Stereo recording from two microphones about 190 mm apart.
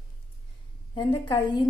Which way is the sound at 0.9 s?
25° left (ahead or behind).